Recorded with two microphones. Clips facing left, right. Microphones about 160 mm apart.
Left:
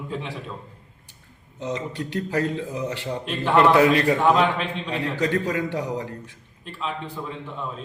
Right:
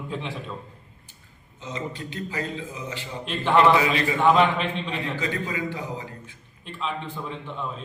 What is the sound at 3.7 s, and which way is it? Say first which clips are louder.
Speech: left 4 dB; 55° left (ahead or behind).